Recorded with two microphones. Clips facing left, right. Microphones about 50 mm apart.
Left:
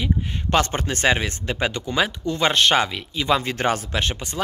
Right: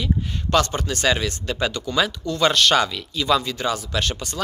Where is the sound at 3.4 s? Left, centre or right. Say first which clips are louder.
Left 2 dB; left.